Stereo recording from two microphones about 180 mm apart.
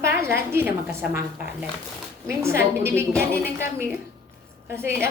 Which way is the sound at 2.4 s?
15° right (ahead or behind).